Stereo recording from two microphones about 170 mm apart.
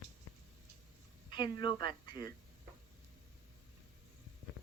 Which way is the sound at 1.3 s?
25° left (ahead or behind).